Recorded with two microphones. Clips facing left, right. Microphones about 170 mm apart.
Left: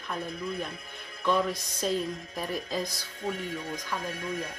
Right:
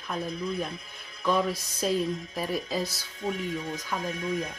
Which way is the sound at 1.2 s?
5° right (ahead or behind).